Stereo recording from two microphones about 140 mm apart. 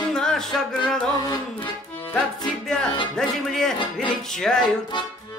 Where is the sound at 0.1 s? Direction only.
5° left (ahead or behind).